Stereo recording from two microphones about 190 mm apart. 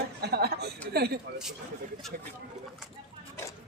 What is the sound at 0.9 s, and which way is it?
Speech, 60° right (ahead or behind).